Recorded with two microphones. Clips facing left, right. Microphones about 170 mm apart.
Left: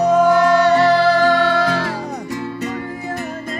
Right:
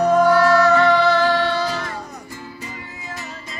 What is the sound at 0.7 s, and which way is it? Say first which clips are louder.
Music: left 2 dB; 35° left (ahead or behind).